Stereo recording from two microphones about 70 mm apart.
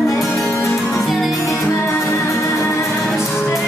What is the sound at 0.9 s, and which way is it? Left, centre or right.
Music, centre.